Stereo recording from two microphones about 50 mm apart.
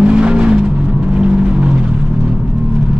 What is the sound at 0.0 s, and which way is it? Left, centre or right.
Vehicle, centre.